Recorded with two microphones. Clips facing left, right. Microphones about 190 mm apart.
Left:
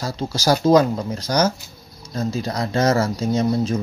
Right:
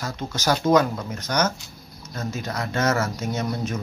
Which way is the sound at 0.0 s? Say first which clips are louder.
Left 4 dB; 30° left (ahead or behind).